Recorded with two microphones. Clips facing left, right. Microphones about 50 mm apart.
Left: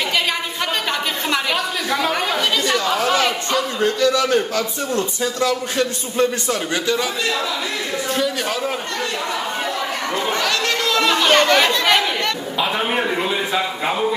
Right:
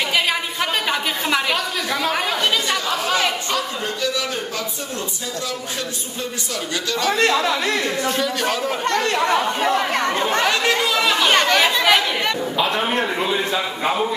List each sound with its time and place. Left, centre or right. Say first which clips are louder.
0.8 s a sound: even; centre
1.9 s chatter: left 2 dB; centre
7.1 s speech: right 5 dB; right
8.1 s speech: even; centre
8.9 s speech: right 5 dB; right
10.4 s speech: right 2 dB; right
11.0 s speech: left 5 dB; centre